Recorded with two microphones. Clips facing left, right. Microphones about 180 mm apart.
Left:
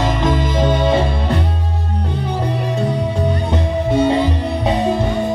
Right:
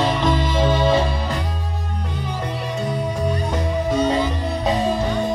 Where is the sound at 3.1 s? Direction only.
30° left (ahead or behind).